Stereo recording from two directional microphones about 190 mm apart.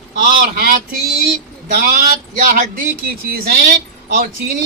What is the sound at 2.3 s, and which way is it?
Speech, 45° right (ahead or behind).